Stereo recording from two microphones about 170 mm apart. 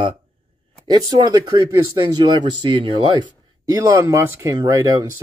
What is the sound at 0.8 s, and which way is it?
Speech, 25° right (ahead or behind).